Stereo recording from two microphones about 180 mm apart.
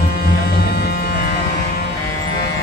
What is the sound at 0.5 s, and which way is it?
Music, 60° left (ahead or behind).